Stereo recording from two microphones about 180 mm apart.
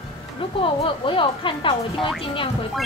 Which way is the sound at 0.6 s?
30° left (ahead or behind).